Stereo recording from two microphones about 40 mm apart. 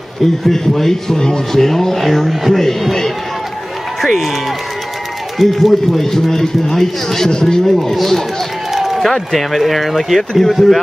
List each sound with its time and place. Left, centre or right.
0.5 s speech: centre
4.0 s speech: centre
5.4 s speech: centre
7.7 s speech: centre
8.7 s run: centre
9.1 s speech: centre